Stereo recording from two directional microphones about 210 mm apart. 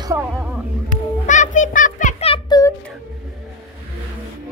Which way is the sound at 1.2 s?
35° left (ahead or behind).